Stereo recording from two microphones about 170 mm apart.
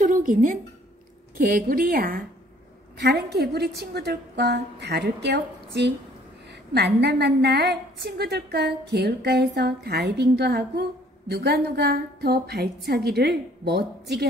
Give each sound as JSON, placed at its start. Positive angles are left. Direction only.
{"t": 0.0, "sound": "a sound", "side_deg": -50}
{"t": 1.4, "sound": "a woman's voice", "side_deg": -60}
{"t": 3.0, "sound": "a woman's voice", "side_deg": -75}
{"t": 6.7, "sound": "a woman's voice", "side_deg": -75}